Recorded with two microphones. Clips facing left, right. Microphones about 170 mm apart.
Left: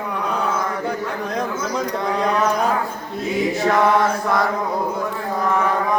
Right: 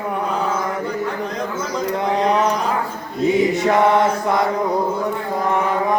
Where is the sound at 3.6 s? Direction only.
25° right (ahead or behind).